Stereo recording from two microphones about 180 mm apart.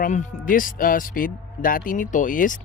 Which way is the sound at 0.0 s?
45° left (ahead or behind).